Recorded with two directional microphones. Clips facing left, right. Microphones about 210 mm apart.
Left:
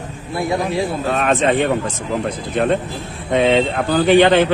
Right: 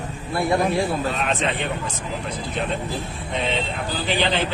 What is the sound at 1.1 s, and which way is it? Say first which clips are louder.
Speech: left 8 dB; 50° left (ahead or behind).